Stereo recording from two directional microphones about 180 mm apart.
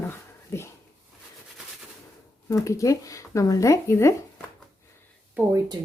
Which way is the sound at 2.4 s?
15° left (ahead or behind).